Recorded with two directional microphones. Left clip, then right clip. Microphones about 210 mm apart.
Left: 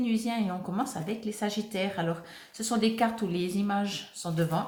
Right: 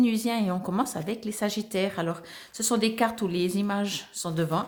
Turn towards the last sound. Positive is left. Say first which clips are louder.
# right 2 dB
turn(degrees=-50)  # may be behind; listen again after turning